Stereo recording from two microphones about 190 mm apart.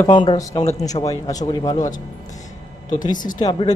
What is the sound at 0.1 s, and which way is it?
Speech, 25° left (ahead or behind).